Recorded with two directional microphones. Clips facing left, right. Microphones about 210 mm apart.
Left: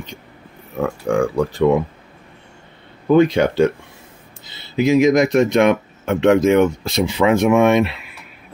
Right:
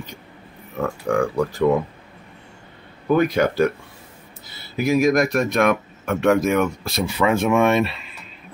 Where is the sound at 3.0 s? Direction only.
25° left (ahead or behind).